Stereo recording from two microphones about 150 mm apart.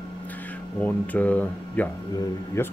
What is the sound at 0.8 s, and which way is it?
Speech, 10° left (ahead or behind).